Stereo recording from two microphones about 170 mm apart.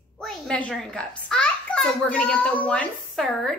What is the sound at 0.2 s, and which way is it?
A child's voice, 5° left (ahead or behind).